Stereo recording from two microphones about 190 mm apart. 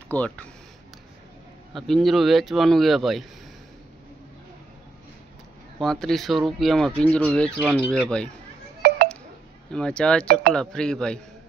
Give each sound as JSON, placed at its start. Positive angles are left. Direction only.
{"t": 0.1, "sound": "speech", "side_deg": 5}
{"t": 1.7, "sound": "speech", "side_deg": 0}
{"t": 5.8, "sound": "speech", "side_deg": 0}
{"t": 8.8, "sound": "telephone dialing", "side_deg": -55}
{"t": 9.7, "sound": "speech", "side_deg": 5}